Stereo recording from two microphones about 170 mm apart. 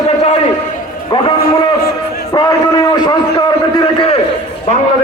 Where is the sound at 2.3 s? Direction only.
25° left (ahead or behind).